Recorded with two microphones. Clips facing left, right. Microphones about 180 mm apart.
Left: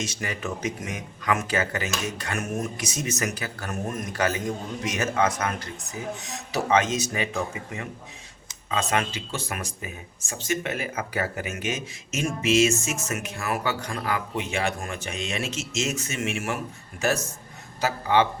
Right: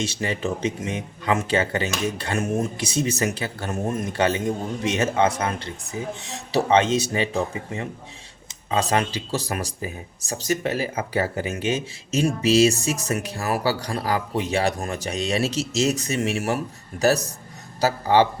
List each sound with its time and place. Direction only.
0.0 s speech: 30° right (ahead or behind)